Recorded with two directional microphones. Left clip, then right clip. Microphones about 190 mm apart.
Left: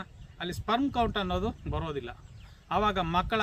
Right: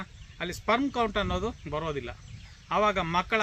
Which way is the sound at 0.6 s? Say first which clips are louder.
Right 2 dB; 25° left (ahead or behind).